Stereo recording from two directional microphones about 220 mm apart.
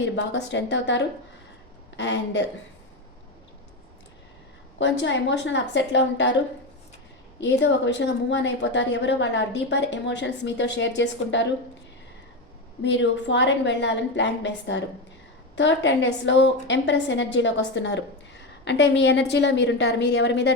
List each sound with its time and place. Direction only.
0.0 s a woman's voice: 55° left (ahead or behind)
4.8 s a woman's voice: 55° left (ahead or behind)
7.3 s a woman's voice: 55° left (ahead or behind)
12.8 s a woman's voice: 55° left (ahead or behind)